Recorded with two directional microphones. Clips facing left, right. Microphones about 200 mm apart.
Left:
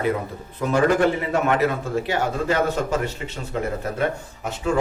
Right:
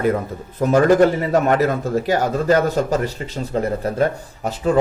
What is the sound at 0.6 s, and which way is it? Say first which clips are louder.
A man's voice: right 5 dB; 40° right (ahead or behind).